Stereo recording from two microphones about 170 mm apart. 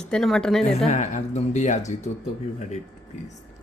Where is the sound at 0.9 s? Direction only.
45° left (ahead or behind).